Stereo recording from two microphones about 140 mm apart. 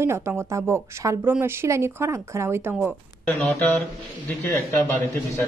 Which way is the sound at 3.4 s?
10° left (ahead or behind).